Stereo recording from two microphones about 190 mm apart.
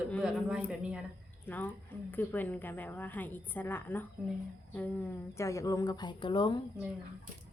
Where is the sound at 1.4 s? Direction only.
10° left (ahead or behind).